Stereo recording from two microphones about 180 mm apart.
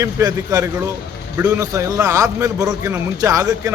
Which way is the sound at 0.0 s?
20° right (ahead or behind).